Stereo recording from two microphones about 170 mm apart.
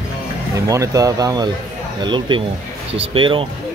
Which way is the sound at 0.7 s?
20° right (ahead or behind).